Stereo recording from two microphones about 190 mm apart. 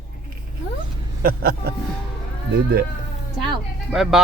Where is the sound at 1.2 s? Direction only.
55° right (ahead or behind).